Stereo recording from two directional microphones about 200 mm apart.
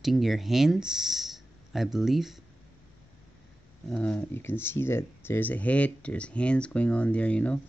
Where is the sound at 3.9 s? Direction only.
5° left (ahead or behind).